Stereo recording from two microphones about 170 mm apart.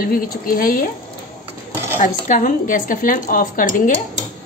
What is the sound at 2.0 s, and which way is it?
A woman's voice, 50° left (ahead or behind).